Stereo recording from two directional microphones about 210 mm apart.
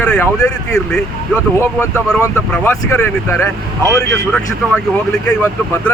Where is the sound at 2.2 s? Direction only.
10° left (ahead or behind).